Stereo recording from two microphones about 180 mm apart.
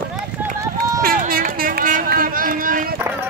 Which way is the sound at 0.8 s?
55° right (ahead or behind).